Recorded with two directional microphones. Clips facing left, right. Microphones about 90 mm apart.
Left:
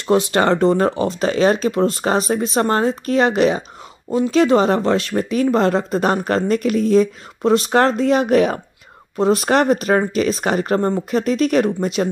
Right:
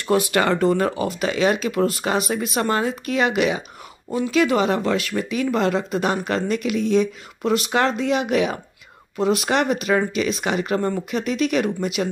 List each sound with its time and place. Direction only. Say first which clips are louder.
0.0 s speech: left 3 dB; 30° left (ahead or behind)